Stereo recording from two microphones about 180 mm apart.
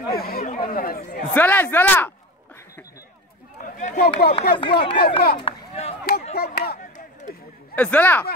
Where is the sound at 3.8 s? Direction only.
50° left (ahead or behind).